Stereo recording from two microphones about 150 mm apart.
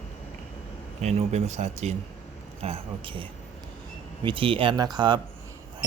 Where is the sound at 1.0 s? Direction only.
45° right (ahead or behind).